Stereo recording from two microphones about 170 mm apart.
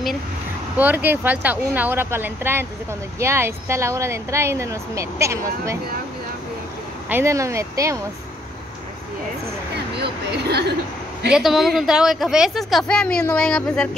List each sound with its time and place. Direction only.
0.7 s speech: 10° right (ahead or behind)
7.1 s speech: 15° right (ahead or behind)
9.9 s speech: 75° right (ahead or behind)
11.3 s a woman's voice: centre (ahead or behind)